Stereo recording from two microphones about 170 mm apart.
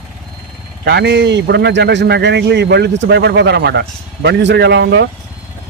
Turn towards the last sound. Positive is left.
turn(degrees=-90)